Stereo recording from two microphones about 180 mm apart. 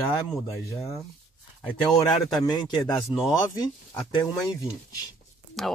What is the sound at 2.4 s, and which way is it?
Speech, 20° left (ahead or behind).